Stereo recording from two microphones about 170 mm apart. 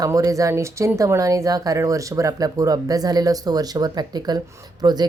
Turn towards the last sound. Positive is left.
turn(degrees=-25)  # may be behind; listen again after turning